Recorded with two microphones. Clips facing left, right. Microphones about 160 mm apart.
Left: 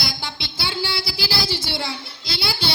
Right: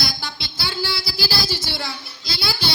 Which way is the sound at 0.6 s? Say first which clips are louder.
Even; 25° left (ahead or behind).